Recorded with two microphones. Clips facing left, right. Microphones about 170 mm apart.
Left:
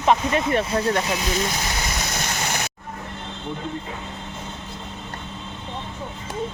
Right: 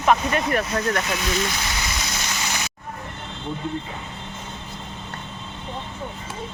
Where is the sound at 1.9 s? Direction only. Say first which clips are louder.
Left 2 dB; 50° left (ahead or behind).